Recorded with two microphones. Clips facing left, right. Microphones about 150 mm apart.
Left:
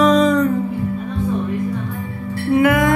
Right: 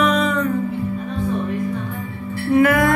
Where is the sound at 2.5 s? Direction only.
20° left (ahead or behind).